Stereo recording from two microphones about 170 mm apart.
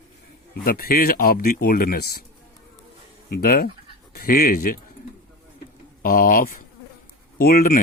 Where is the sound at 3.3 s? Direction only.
60° left (ahead or behind).